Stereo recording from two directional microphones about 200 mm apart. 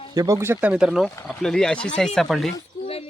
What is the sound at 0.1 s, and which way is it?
Speech, 15° right (ahead or behind).